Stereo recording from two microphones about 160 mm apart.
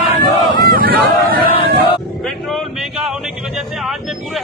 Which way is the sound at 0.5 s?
65° right (ahead or behind).